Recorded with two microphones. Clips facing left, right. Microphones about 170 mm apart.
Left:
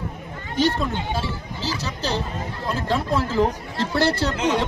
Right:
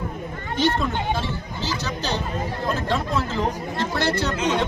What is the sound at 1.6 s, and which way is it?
Speech, 30° left (ahead or behind).